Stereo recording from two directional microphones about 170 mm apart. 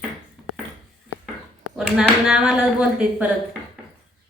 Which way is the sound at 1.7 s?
5° right (ahead or behind).